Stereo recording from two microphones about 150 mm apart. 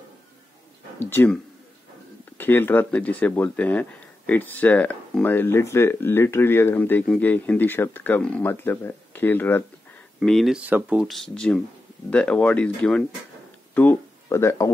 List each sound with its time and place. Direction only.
0.9 s speech: 15° left (ahead or behind)
10.2 s speech: centre (ahead or behind)
11.1 s speech: 5° left (ahead or behind); by 14.7 s 20° left (ahead or behind)